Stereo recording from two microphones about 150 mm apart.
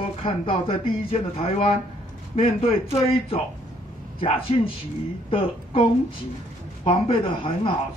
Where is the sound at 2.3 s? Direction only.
40° left (ahead or behind).